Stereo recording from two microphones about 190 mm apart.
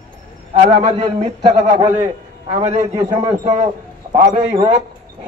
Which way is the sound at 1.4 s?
15° right (ahead or behind).